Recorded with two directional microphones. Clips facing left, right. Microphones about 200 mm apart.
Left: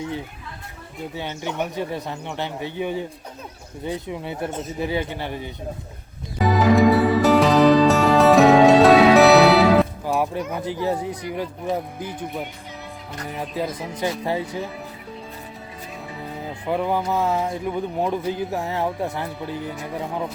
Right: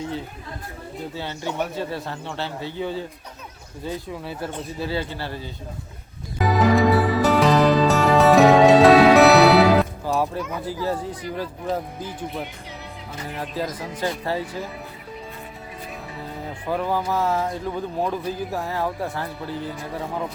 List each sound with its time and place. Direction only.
1.1 s speech: 20° left (ahead or behind)
6.4 s music: centre (ahead or behind)
10.1 s speech: 15° left (ahead or behind)
14.3 s speech: 15° left (ahead or behind)
16.6 s speech: 20° left (ahead or behind)